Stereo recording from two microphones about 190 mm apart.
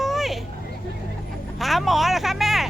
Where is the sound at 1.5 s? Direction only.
Centre (ahead or behind).